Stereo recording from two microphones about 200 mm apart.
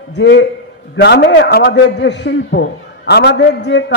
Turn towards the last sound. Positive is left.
turn(degrees=60)  # may be behind; listen again after turning